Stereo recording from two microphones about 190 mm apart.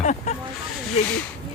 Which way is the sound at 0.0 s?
35° left (ahead or behind).